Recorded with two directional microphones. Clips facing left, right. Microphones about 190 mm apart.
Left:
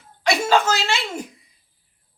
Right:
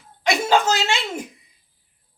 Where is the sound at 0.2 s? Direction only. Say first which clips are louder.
Even; 20° right (ahead or behind).